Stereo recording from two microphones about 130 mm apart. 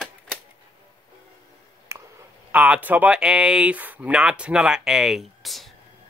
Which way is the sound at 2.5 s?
10° right (ahead or behind).